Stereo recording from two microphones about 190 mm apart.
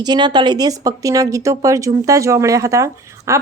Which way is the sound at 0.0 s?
20° right (ahead or behind).